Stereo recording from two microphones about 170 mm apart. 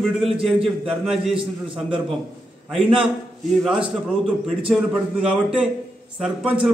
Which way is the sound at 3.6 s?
5° right (ahead or behind).